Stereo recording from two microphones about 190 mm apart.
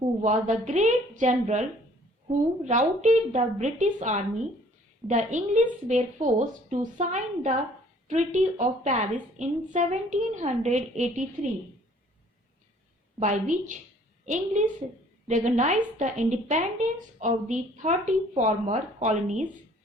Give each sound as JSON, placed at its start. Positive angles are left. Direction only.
{"t": 0.2, "sound": "a woman's voice", "side_deg": -40}
{"t": 13.1, "sound": "a woman's voice", "side_deg": -40}